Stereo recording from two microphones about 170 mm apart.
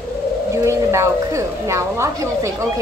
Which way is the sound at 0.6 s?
15° right (ahead or behind).